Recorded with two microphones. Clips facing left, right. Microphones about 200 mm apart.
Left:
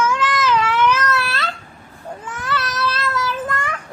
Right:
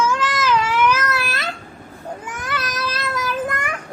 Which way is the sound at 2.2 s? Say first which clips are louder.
Left 4 dB; 10° right (ahead or behind).